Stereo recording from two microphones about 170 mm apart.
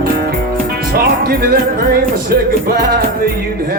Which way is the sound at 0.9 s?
65° right (ahead or behind).